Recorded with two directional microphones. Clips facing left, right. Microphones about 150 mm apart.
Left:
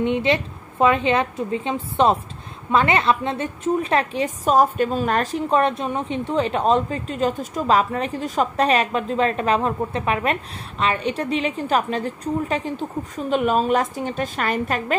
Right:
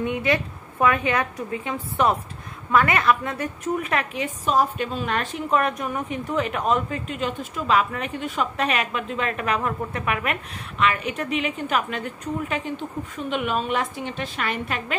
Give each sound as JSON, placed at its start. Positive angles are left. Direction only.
{"t": 0.0, "sound": "a woman's voice", "side_deg": 25}
{"t": 4.5, "sound": "a woman's voice", "side_deg": 45}